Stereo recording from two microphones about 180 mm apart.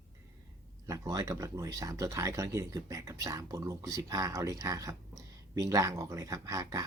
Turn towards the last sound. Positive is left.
turn(degrees=-20)  # may be behind; listen again after turning